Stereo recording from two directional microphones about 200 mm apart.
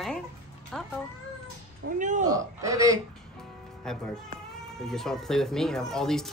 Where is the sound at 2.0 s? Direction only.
40° right (ahead or behind).